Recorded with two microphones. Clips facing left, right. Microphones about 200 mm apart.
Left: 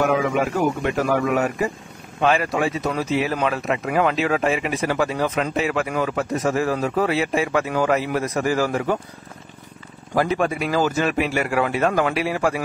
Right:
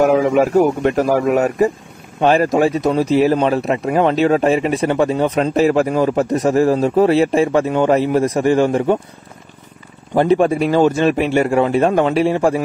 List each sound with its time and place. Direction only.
0.6 s speech: 30° right (ahead or behind)
10.1 s a man's voice: 30° right (ahead or behind)